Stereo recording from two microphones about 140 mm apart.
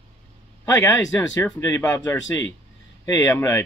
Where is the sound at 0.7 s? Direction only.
20° left (ahead or behind).